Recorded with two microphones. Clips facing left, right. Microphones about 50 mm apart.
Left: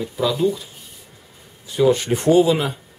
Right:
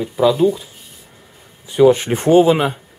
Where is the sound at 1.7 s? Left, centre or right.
Right.